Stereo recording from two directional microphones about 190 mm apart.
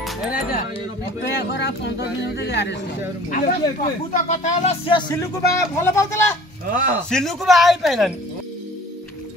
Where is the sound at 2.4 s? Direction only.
65° left (ahead or behind).